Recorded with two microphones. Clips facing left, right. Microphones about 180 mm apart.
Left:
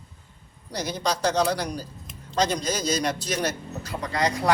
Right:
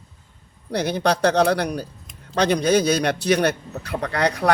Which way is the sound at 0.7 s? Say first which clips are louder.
Right 7 dB; 60° right (ahead or behind).